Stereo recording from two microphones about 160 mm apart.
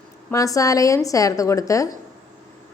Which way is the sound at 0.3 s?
20° left (ahead or behind).